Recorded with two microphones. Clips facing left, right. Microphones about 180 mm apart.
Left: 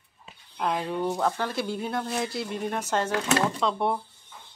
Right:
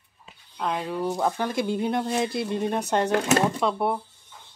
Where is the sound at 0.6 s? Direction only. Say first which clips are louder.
Even; centre (ahead or behind).